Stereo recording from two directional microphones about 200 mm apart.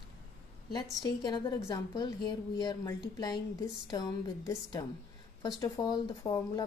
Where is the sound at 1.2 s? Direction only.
25° left (ahead or behind).